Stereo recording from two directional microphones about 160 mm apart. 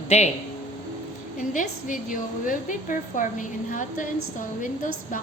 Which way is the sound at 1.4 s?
55° left (ahead or behind).